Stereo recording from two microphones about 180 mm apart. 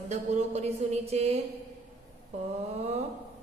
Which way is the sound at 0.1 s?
40° right (ahead or behind).